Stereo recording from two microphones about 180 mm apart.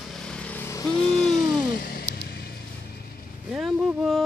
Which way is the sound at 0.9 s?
35° left (ahead or behind).